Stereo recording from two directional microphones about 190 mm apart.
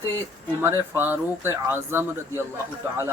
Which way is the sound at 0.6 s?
15° right (ahead or behind).